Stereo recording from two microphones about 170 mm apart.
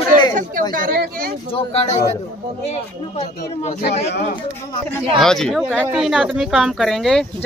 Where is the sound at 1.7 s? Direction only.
40° left (ahead or behind).